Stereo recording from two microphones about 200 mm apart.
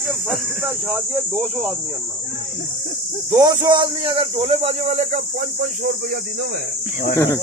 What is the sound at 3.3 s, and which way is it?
Speech, 15° right (ahead or behind).